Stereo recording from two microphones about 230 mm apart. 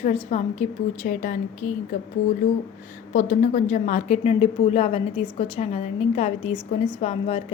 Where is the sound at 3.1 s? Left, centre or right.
Left.